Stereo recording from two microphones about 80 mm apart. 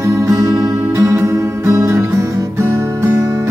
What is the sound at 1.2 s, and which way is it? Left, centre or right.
Music, right.